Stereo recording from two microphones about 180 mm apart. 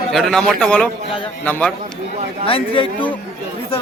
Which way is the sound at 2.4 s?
30° left (ahead or behind).